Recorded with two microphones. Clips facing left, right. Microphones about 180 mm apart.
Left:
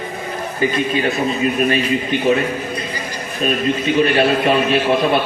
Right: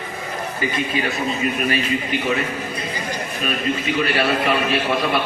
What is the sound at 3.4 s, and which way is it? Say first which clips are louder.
A man's voice: left 6 dB; 25° left (ahead or behind).